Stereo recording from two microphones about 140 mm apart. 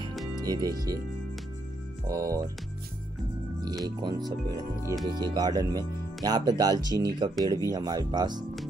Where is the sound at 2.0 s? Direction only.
25° right (ahead or behind).